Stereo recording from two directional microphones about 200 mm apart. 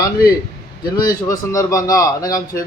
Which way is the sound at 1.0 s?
15° left (ahead or behind).